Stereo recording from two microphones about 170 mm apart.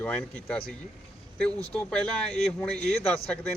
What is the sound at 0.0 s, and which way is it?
Speech, 10° left (ahead or behind).